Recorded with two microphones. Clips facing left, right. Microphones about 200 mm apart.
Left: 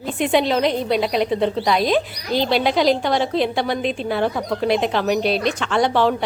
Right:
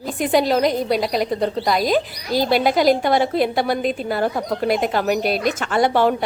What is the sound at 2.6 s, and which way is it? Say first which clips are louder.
Speech: right 2 dB; 45° right (ahead or behind).